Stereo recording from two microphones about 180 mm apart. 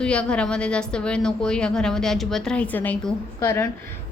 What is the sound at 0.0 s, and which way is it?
A woman's voice, 5° left (ahead or behind).